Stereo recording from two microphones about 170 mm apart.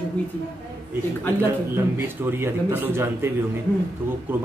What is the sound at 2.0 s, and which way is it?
Speech, 15° right (ahead or behind).